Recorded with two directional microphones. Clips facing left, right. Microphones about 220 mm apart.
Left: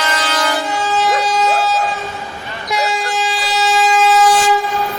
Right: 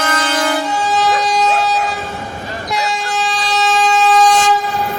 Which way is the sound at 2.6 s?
Centre (ahead or behind).